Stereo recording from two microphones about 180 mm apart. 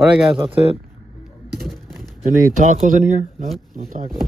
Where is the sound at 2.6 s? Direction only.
45° right (ahead or behind).